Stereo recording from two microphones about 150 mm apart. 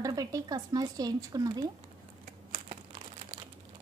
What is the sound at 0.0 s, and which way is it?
Speech, 25° right (ahead or behind).